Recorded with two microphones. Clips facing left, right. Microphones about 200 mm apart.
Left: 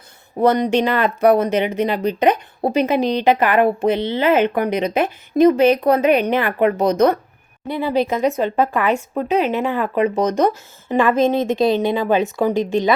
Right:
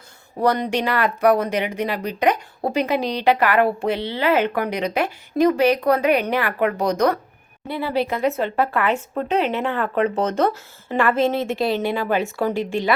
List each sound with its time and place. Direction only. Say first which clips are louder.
0.3 s speech: left 5 dB; 20° left (ahead or behind)